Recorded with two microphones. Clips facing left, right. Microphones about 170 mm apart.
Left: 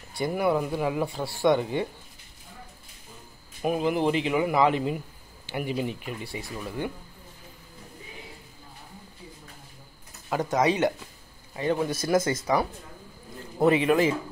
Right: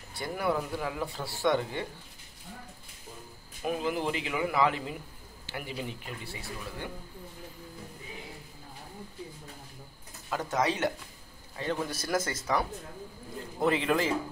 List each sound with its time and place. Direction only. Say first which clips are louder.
0.1 s speech: left 6 dB; 15° left (ahead or behind)
3.6 s speech: left 6 dB; 20° left (ahead or behind)
10.3 s a man's voice: left 5 dB; 15° left (ahead or behind)
13.7 s speech: left 6 dB; 10° left (ahead or behind)